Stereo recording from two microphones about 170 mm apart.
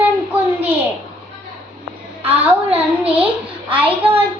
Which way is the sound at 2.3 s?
35° right (ahead or behind).